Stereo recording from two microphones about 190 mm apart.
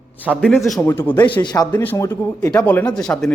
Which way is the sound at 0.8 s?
10° left (ahead or behind).